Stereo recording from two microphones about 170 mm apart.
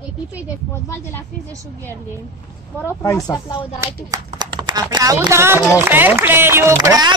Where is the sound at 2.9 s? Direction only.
20° left (ahead or behind).